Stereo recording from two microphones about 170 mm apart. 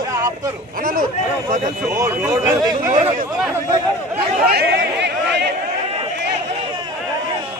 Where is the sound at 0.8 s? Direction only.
55° right (ahead or behind).